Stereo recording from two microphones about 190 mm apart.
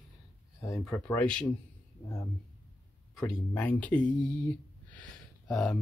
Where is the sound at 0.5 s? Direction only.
15° left (ahead or behind).